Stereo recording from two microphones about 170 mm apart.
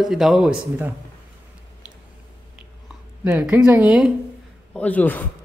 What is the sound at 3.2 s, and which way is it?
Speech, 5° right (ahead or behind).